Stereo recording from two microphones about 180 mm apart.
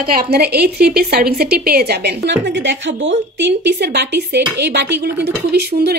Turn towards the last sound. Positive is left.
turn(degrees=-65)  # may be behind; listen again after turning